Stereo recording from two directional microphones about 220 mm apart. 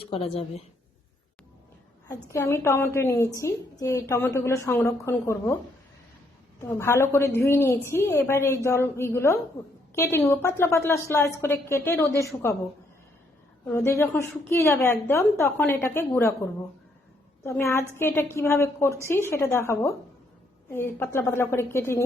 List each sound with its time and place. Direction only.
0.1 s speech: 25° left (ahead or behind)
2.0 s a woman's voice: 15° left (ahead or behind)
6.6 s a woman's voice: 10° left (ahead or behind)
13.7 s a woman's voice: 10° left (ahead or behind)